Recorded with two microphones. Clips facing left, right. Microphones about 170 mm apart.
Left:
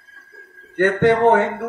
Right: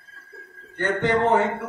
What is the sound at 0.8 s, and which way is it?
Speech, 65° left (ahead or behind).